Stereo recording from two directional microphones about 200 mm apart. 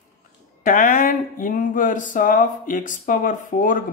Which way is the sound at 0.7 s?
40° left (ahead or behind).